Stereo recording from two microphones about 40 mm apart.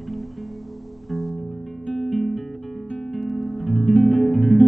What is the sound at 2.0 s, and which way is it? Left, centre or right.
Guitar, centre.